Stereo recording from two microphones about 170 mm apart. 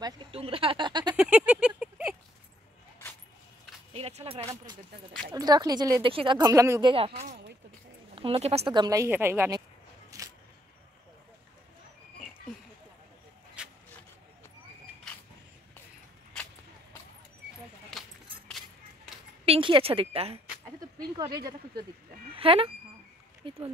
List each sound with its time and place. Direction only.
0.0 s a woman's voice: 30° right (ahead or behind)
1.1 s a sound: 5° right (ahead or behind)
3.9 s a sound: 35° right (ahead or behind)
5.3 s a woman's voice: 20° right (ahead or behind)
8.1 s a woman's voice: 35° right (ahead or behind); by 9.6 s 15° right (ahead or behind)
10.1 s single-lens reflex camera: 20° right (ahead or behind)
13.6 s vehicle: 5° right (ahead or behind)
19.4 s a sound: 30° right (ahead or behind)
21.4 s a woman's voice: 25° right (ahead or behind)